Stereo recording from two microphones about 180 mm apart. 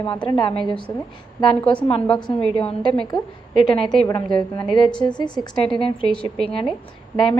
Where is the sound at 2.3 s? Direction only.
30° left (ahead or behind).